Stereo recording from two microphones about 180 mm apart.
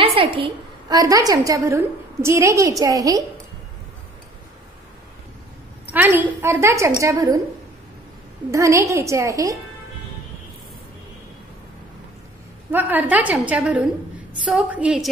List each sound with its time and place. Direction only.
0.0 s a sound: 30° right (ahead or behind)
0.9 s a woman's voice: 20° right (ahead or behind)
5.9 s a woman's voice: 10° right (ahead or behind)
8.5 s a woman's voice: 15° right (ahead or behind)
12.7 s a woman's voice: 10° right (ahead or behind)